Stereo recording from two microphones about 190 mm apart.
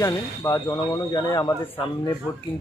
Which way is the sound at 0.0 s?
15° left (ahead or behind).